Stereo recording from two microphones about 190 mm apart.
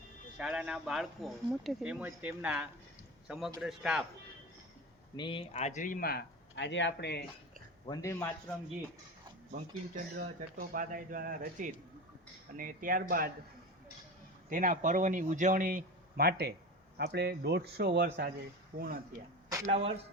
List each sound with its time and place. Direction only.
0.3 s a man's voice: 5° right (ahead or behind)
5.1 s speech: 25° left (ahead or behind); by 7.3 s 60° left (ahead or behind)
7.9 s a man's voice: 15° left (ahead or behind)
10.2 s speech: 50° right (ahead or behind)
14.5 s speech: 45° right (ahead or behind)
19.6 s speech: 35° right (ahead or behind)